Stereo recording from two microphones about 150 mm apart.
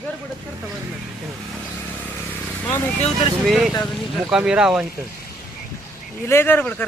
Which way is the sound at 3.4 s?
Centre (ahead or behind).